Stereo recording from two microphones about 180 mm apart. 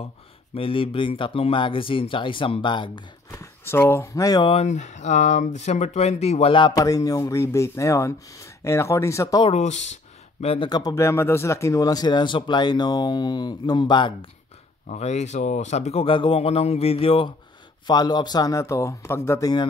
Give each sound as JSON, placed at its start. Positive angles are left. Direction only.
{"t": 0.6, "sound": "speech", "side_deg": 30}
{"t": 4.6, "sound": "speech", "side_deg": 40}
{"t": 9.5, "sound": "speech", "side_deg": 40}
{"t": 14.9, "sound": "speech", "side_deg": 40}